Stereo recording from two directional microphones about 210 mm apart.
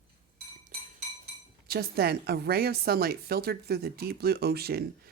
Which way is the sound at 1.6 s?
45° right (ahead or behind).